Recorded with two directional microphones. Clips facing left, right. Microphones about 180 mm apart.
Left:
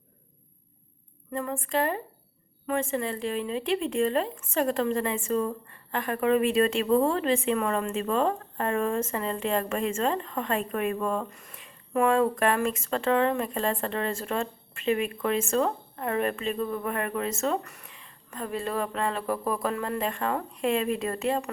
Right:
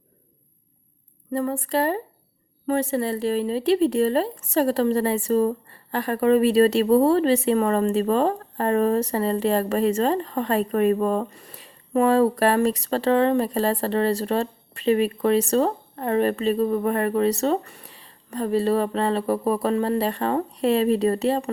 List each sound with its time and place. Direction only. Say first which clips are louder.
1.3 s speech: right 6 dB; 35° right (ahead or behind)